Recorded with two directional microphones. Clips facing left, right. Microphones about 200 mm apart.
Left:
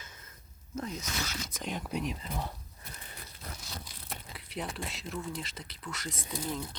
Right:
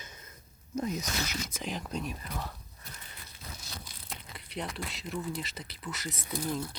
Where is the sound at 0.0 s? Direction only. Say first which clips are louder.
Right 3 dB; 20° right (ahead or behind).